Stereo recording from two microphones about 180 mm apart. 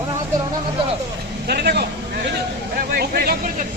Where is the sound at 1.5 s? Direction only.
65° right (ahead or behind).